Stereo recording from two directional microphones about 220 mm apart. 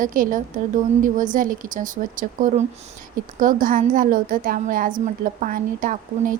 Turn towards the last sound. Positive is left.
turn(degrees=-35)  # may be behind; listen again after turning